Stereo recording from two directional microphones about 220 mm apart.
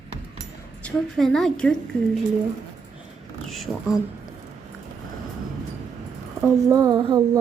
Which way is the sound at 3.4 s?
Centre (ahead or behind).